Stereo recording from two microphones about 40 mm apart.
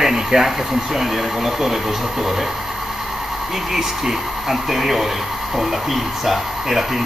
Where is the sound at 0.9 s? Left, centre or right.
Centre.